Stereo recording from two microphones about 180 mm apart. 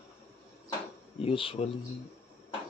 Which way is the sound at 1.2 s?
30° left (ahead or behind).